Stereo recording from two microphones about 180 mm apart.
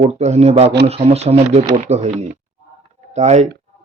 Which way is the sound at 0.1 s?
35° right (ahead or behind).